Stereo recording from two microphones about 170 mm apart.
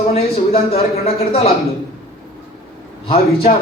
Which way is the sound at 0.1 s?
35° left (ahead or behind).